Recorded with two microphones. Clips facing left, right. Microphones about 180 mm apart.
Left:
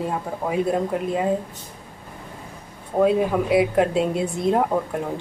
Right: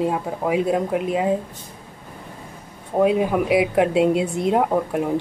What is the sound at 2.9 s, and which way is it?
Speech, 15° right (ahead or behind).